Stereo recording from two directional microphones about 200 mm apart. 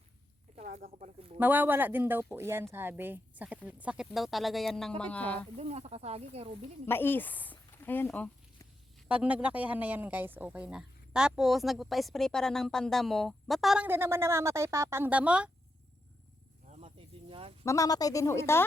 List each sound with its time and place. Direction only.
0.5 s a sound: 40° right (ahead or behind)
0.9 s speech: 35° right (ahead or behind)
1.4 s speech: 10° right (ahead or behind)
5.5 s speech: 30° right (ahead or behind)
6.8 s speech: 10° left (ahead or behind)
9.0 s speech: 5° right (ahead or behind)
16.6 s cricket: 35° right (ahead or behind)
17.7 s speech: 15° left (ahead or behind)